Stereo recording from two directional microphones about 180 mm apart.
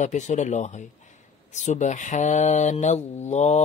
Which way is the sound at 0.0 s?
40° left (ahead or behind).